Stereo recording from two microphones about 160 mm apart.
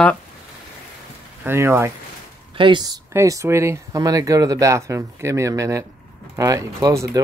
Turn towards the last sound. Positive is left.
turn(degrees=-20)  # may be behind; listen again after turning